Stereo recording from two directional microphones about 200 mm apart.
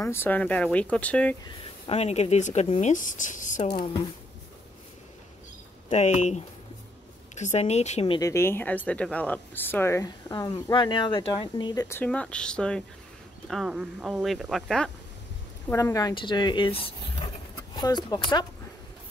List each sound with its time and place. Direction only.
0.0 s speech: 10° left (ahead or behind)
1.9 s speech: 30° left (ahead or behind)
3.7 s speech: 25° left (ahead or behind)
5.9 s speech: 35° left (ahead or behind)
8.2 s speech: 15° left (ahead or behind)
15.7 s speech: 15° left (ahead or behind)